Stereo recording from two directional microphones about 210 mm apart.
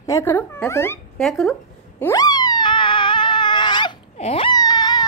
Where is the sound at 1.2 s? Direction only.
Centre (ahead or behind).